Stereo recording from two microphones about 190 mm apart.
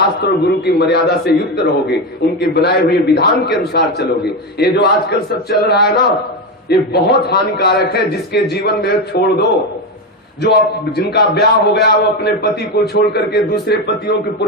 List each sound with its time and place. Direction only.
0.2 s a man's voice: 60° left (ahead or behind)
10.4 s a man's voice: 60° left (ahead or behind)